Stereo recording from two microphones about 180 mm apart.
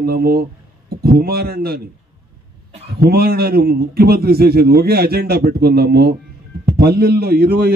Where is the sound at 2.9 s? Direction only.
60° right (ahead or behind).